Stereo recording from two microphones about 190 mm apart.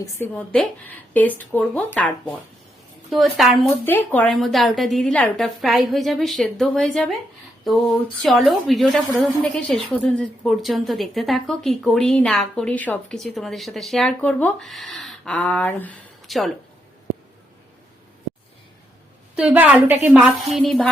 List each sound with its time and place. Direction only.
0.0 s a woman's voice: 10° left (ahead or behind)
3.1 s a woman's voice: centre (ahead or behind)
3.8 s a woman's voice: 10° left (ahead or behind)
8.2 s a woman's voice: centre (ahead or behind)
19.4 s a woman's voice: 5° right (ahead or behind)